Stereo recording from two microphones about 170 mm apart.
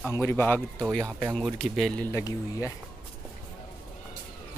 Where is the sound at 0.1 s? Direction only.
15° left (ahead or behind).